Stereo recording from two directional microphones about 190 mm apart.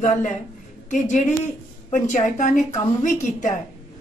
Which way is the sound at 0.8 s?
40° left (ahead or behind).